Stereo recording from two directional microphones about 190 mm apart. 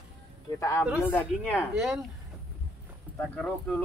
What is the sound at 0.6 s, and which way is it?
Speech, 15° left (ahead or behind).